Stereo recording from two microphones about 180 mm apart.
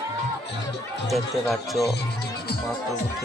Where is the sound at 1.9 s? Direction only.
60° left (ahead or behind).